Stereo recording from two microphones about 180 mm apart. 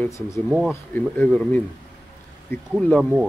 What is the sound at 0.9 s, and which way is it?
Speech, 10° left (ahead or behind).